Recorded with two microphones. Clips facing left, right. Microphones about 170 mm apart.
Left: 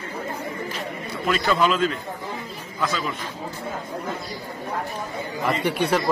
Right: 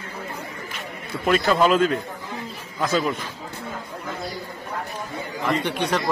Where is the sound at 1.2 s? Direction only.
45° right (ahead or behind).